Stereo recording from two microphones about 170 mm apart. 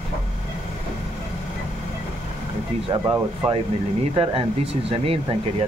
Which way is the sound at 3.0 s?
15° right (ahead or behind).